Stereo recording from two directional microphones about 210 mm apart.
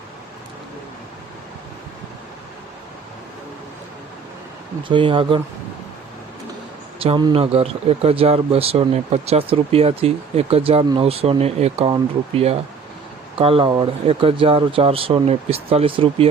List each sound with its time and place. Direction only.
4.8 s speech: 25° right (ahead or behind)
7.0 s speech: 25° right (ahead or behind)